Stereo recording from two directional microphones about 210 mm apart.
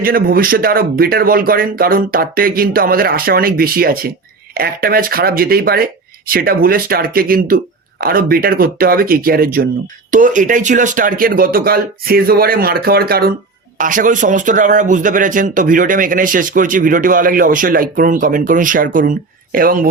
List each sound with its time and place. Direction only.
0.0 s speech: 45° right (ahead or behind)